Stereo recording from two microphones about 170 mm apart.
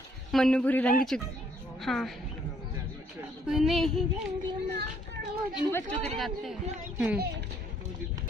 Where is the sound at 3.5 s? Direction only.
Centre (ahead or behind).